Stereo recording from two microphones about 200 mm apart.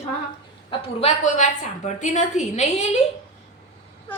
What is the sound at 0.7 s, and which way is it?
A woman's voice, 30° left (ahead or behind).